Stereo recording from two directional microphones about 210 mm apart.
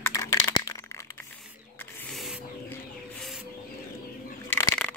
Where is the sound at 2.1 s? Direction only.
Centre (ahead or behind).